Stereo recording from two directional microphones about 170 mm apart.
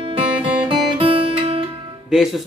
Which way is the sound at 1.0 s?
35° right (ahead or behind).